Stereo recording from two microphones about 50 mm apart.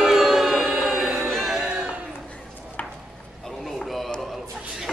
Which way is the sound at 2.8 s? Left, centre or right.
Left.